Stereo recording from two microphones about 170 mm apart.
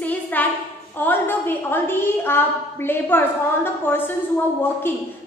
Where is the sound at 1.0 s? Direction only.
10° left (ahead or behind).